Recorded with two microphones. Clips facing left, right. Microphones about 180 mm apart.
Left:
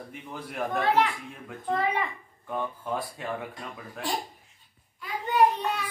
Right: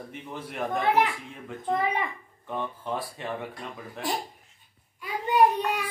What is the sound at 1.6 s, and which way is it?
Speech, 20° right (ahead or behind).